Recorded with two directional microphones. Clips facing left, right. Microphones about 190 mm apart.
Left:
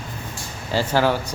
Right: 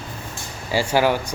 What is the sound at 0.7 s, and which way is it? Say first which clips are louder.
Speech: right 1 dB; 10° right (ahead or behind).